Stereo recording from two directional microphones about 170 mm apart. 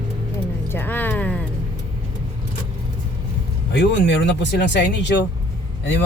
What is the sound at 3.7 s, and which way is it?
Speech, 90° left.